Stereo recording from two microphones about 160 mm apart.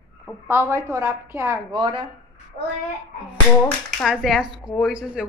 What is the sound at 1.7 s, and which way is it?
Speech, 35° right (ahead or behind).